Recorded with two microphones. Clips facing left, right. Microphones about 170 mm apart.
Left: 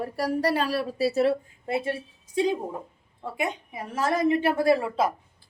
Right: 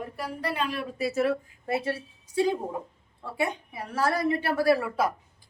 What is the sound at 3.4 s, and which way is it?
A woman's voice, 20° left (ahead or behind).